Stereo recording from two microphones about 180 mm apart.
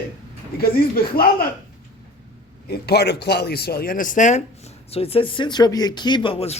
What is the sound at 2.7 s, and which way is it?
Speech, 65° left (ahead or behind).